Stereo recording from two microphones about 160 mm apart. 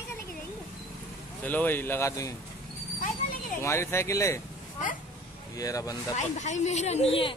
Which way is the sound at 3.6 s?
15° left (ahead or behind).